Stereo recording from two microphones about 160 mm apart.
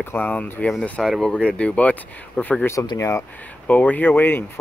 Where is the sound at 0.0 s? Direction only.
10° left (ahead or behind).